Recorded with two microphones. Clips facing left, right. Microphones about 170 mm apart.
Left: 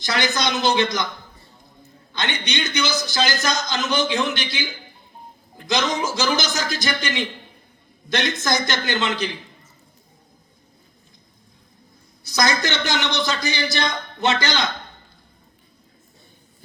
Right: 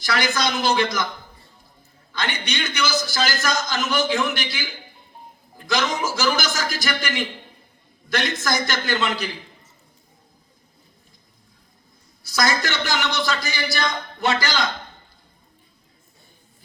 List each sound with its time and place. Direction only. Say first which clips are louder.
0.0 s a man's voice: even; 20° left (ahead or behind)
2.1 s a man's voice: left 1 dB; 20° left (ahead or behind)
12.2 s a man's voice: left 1 dB; 20° left (ahead or behind)